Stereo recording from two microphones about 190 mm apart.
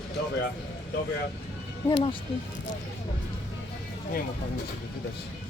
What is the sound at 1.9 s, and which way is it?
Speech, 30° left (ahead or behind).